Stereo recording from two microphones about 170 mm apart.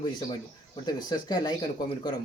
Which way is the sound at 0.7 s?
25° left (ahead or behind).